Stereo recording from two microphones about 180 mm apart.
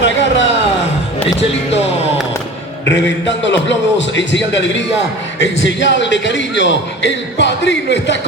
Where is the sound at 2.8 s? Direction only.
85° left.